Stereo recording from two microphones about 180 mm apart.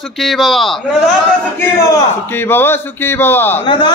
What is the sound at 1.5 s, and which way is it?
A man's voice, 10° left (ahead or behind).